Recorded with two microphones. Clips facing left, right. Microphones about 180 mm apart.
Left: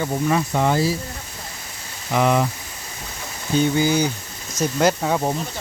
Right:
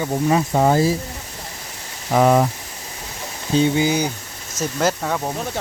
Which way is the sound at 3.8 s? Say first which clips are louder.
Even; 10° right (ahead or behind).